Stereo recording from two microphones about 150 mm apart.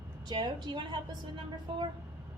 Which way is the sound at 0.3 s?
30° right (ahead or behind).